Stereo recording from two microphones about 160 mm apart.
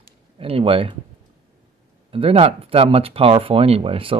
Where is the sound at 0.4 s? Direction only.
35° right (ahead or behind).